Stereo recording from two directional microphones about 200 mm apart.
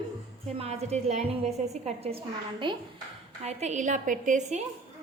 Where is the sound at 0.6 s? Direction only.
30° right (ahead or behind).